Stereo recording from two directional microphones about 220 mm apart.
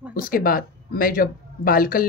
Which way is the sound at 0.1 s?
40° left (ahead or behind).